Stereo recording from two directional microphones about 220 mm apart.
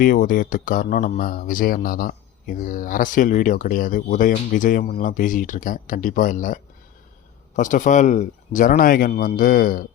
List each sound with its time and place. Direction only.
0.0 s speech: 35° left (ahead or behind)